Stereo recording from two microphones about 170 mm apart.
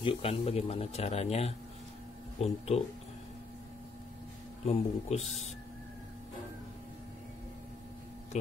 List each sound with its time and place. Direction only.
0.0 s speech: 35° left (ahead or behind)
4.6 s speech: 40° left (ahead or behind)